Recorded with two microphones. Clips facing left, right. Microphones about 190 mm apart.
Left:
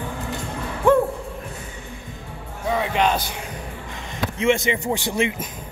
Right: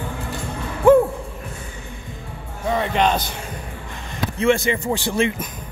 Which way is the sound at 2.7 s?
5° left (ahead or behind).